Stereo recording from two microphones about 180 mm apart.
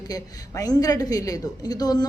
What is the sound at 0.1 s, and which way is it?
Speech, 20° left (ahead or behind).